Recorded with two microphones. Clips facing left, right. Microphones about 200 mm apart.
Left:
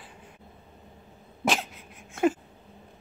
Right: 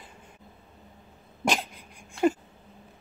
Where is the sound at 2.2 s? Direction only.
55° left (ahead or behind).